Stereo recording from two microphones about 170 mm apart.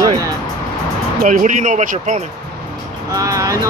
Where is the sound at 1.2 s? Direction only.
50° right (ahead or behind).